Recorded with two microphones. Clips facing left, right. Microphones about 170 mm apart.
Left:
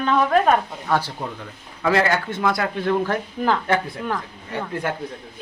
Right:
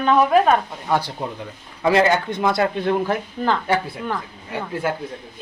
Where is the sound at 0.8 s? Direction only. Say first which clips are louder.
Right 1 dB; 15° right (ahead or behind).